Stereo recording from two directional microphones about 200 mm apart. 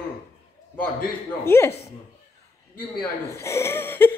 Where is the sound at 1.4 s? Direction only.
10° left (ahead or behind).